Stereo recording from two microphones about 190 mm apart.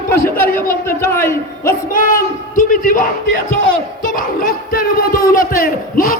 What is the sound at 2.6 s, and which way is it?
A man's voice, 45° left (ahead or behind).